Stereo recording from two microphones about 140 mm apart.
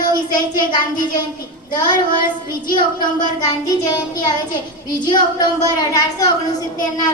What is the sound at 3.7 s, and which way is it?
A woman's voice, 25° left (ahead or behind).